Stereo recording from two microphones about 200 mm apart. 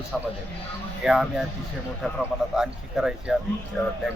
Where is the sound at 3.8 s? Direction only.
10° left (ahead or behind).